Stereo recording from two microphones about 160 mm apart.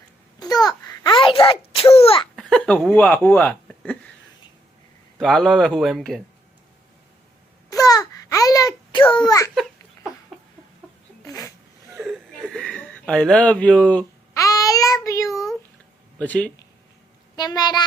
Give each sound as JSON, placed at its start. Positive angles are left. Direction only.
{"t": 0.3, "sound": "babbling", "side_deg": 25}
{"t": 0.9, "sound": "sneeze", "side_deg": 30}
{"t": 2.3, "sound": "speech", "side_deg": 5}
{"t": 5.2, "sound": "speech", "side_deg": 5}
{"t": 7.7, "sound": "a sound", "side_deg": 20}
{"t": 11.3, "sound": "a sound", "side_deg": 20}
{"t": 12.0, "sound": "a sound", "side_deg": 0}
{"t": 14.3, "sound": "child singing", "side_deg": 20}
{"t": 16.2, "sound": "speech", "side_deg": 10}
{"t": 17.3, "sound": "a child's voice", "side_deg": 25}